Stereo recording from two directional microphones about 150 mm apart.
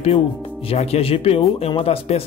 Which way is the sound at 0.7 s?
40° left (ahead or behind).